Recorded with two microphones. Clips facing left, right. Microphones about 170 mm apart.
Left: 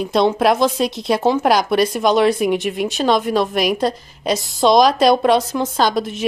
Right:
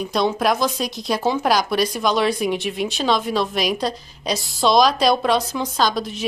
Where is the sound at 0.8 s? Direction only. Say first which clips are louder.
Left 6 dB; 25° left (ahead or behind).